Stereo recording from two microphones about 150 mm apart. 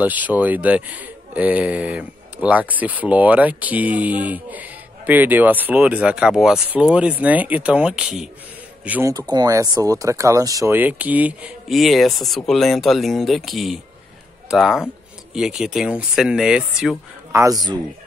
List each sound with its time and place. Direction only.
0.0 s speech: 10° right (ahead or behind)
9.1 s speech: 25° right (ahead or behind)
10.8 s speech: 10° right (ahead or behind)
11.7 s speech: centre (ahead or behind)
17.3 s speech: 20° right (ahead or behind)